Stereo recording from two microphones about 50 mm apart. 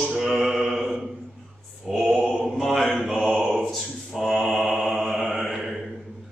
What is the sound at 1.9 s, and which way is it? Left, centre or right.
Mantra, centre.